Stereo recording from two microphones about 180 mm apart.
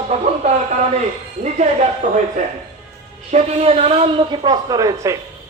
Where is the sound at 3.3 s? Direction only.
35° right (ahead or behind).